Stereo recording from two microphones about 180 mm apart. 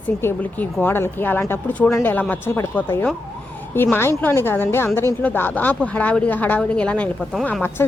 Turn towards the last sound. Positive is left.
turn(degrees=10)  # may be behind; listen again after turning